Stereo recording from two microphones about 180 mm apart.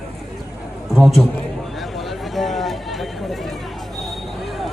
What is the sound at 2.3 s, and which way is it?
Chatter, centre (ahead or behind).